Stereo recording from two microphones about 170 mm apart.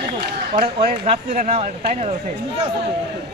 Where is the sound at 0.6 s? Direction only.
40° right (ahead or behind).